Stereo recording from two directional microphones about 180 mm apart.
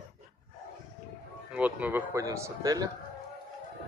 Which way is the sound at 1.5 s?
10° right (ahead or behind).